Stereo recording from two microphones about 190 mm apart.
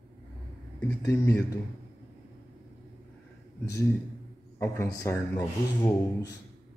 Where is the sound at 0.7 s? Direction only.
10° left (ahead or behind).